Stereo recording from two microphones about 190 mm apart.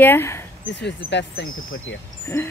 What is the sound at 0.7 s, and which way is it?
Speech, 65° left (ahead or behind).